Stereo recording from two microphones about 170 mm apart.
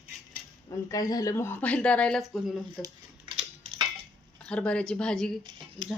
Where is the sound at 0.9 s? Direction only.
20° left (ahead or behind); by 2.6 s centre (ahead or behind).